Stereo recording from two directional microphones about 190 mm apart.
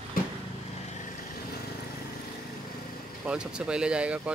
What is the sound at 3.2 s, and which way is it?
Speech, 5° right (ahead or behind).